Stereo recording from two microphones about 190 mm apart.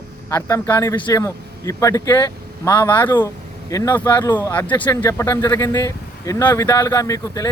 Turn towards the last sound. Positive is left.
turn(degrees=15)  # may be behind; listen again after turning